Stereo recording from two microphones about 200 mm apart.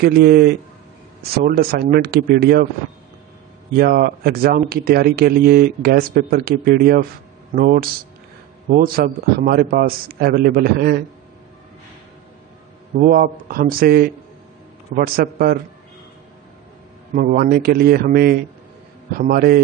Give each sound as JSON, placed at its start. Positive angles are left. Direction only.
{"t": 0.0, "sound": "speech", "side_deg": -50}
{"t": 3.7, "sound": "speech", "side_deg": -50}
{"t": 13.0, "sound": "speech", "side_deg": -45}
{"t": 17.1, "sound": "speech", "side_deg": -45}